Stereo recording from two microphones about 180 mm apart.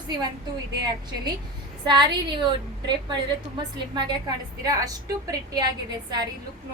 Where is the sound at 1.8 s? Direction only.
25° right (ahead or behind).